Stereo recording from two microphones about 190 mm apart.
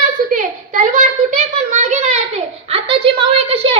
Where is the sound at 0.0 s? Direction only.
40° right (ahead or behind).